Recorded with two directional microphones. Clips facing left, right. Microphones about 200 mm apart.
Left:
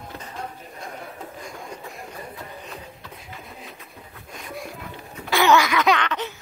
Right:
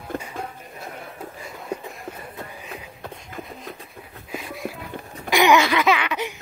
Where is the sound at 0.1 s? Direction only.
50° right (ahead or behind).